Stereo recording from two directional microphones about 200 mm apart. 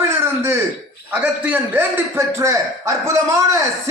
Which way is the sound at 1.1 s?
10° right (ahead or behind).